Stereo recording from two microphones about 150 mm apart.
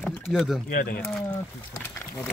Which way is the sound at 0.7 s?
75° left (ahead or behind).